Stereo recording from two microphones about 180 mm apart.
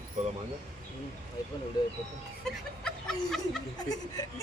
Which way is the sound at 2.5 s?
5° left (ahead or behind).